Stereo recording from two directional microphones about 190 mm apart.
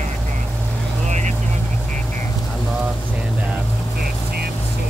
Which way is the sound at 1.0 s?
40° right (ahead or behind).